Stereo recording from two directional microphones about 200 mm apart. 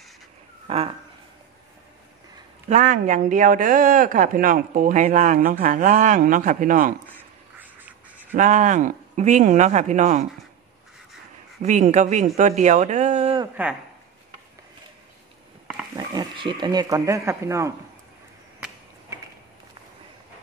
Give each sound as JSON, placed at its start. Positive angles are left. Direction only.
{"t": 0.7, "sound": "speech", "side_deg": -30}
{"t": 2.7, "sound": "speech", "side_deg": -40}
{"t": 7.5, "sound": "duck", "side_deg": -10}
{"t": 8.4, "sound": "speech", "side_deg": -40}
{"t": 11.6, "sound": "speech", "side_deg": -35}
{"t": 16.0, "sound": "speech", "side_deg": -25}